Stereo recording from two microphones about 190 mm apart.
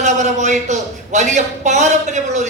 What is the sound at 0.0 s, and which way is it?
A man's voice, 40° right (ahead or behind).